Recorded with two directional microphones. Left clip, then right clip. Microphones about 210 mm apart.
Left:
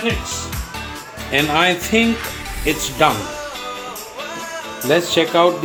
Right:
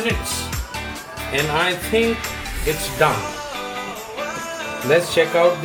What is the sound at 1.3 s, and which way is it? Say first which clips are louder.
Speech: left 4 dB; 40° left (ahead or behind).